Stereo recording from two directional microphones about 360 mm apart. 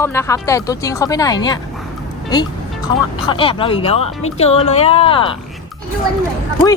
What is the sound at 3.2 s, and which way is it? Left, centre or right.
Speech, centre.